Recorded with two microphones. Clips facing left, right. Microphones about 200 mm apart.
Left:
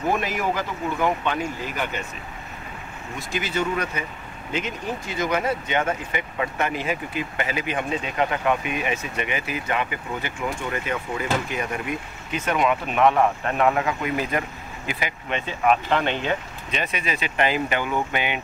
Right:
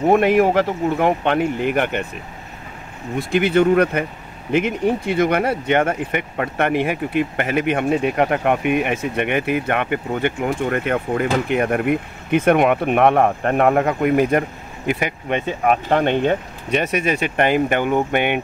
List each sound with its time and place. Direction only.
0.1 s speech: 60° right (ahead or behind)
3.2 s speech: 60° right (ahead or behind)